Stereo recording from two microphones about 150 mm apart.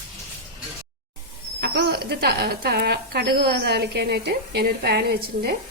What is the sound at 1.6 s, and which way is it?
Speech, 90° right.